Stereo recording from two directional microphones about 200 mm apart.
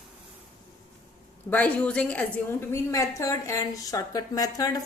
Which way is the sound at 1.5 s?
5° left (ahead or behind).